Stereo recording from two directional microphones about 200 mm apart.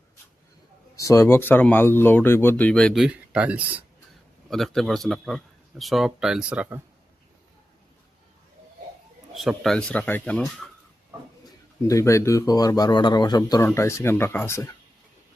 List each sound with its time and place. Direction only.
0.9 s speech: 15° left (ahead or behind); by 6.8 s 10° right (ahead or behind)
9.3 s speech: centre (ahead or behind)
11.9 s a man's voice: 15° left (ahead or behind)